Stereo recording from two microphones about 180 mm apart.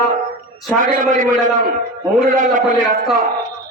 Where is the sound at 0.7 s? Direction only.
50° right (ahead or behind).